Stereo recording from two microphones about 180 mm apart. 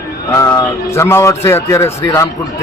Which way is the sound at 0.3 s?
15° left (ahead or behind).